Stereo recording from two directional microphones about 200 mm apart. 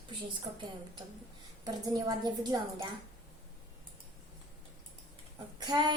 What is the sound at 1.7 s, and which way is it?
A woman's voice, 20° right (ahead or behind).